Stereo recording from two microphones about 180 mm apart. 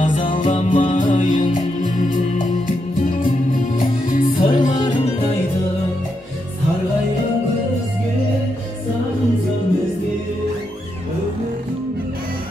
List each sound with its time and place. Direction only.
0.0 s music: 45° left (ahead or behind)